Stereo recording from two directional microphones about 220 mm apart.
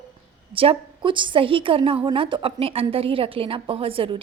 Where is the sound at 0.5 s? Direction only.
25° right (ahead or behind).